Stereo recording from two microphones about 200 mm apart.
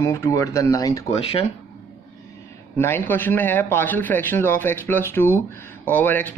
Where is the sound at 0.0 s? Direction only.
15° left (ahead or behind).